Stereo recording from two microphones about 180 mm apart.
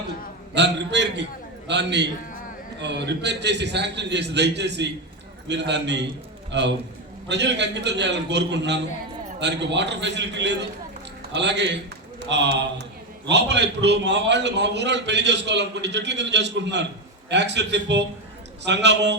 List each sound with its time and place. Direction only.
0.5 s a man's voice: 75° right (ahead or behind)